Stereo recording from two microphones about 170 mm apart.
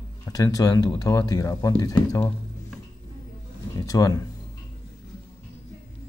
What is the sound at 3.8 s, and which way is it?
Speech, 20° left (ahead or behind).